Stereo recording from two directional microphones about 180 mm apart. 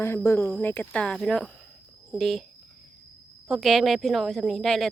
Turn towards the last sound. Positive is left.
turn(degrees=0)  # may be behind; listen again after turning